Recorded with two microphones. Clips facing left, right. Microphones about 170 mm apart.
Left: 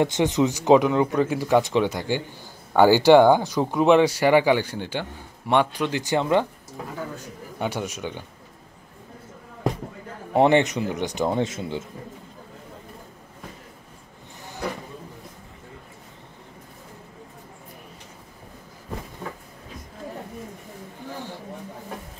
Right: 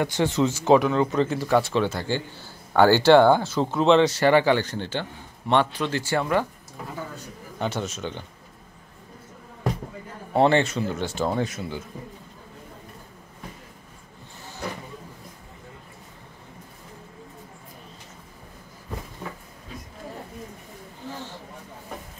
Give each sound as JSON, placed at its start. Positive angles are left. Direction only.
{"t": 0.0, "sound": "speech", "side_deg": 20}
{"t": 7.5, "sound": "speech", "side_deg": 10}
{"t": 10.3, "sound": "speech", "side_deg": 15}
{"t": 21.1, "sound": "a sound", "side_deg": 15}